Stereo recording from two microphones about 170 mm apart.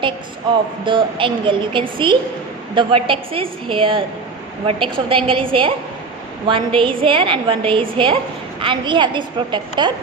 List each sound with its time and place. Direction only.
0.5 s a woman's voice: 30° right (ahead or behind)